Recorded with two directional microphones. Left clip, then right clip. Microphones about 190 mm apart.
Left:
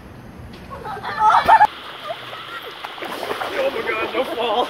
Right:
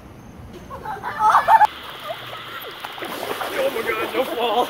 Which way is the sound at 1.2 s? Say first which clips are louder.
Left 1 dB; 55° right (ahead or behind).